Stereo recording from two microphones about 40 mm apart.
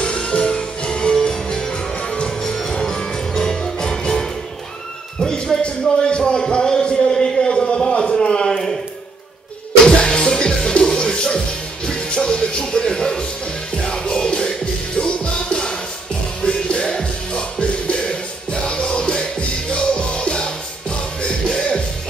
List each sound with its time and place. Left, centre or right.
0.0 s music: left
5.2 s a sound: centre
9.8 s music: centre